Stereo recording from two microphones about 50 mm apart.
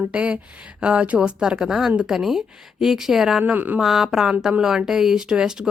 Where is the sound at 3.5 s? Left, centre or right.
Right.